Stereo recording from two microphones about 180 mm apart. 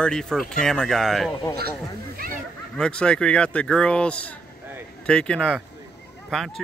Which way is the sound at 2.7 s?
5° left (ahead or behind).